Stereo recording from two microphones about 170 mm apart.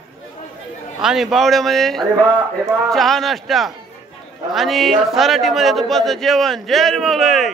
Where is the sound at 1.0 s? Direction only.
Centre (ahead or behind).